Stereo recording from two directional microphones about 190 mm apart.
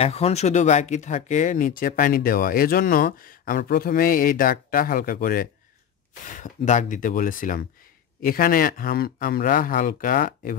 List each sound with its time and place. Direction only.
0.0 s speech: 35° left (ahead or behind)